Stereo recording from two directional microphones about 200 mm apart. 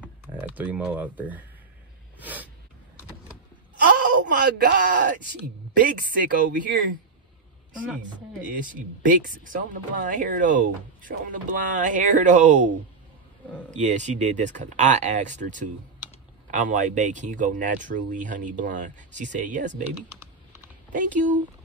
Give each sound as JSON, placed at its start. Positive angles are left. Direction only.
{"t": 0.0, "sound": "typing", "side_deg": -10}
{"t": 2.1, "sound": "a sound", "side_deg": -10}
{"t": 4.3, "sound": "speech", "side_deg": -55}
{"t": 8.5, "sound": "speech", "side_deg": -45}
{"t": 13.7, "sound": "speech", "side_deg": -35}
{"t": 20.9, "sound": "speech", "side_deg": -40}